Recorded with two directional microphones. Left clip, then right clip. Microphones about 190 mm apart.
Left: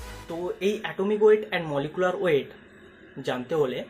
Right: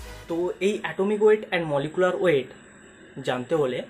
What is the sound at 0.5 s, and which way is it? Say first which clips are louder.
Speech: right 2 dB; 15° right (ahead or behind).